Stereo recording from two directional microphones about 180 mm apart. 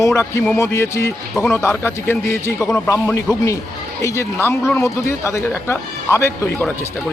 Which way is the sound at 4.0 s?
15° left (ahead or behind).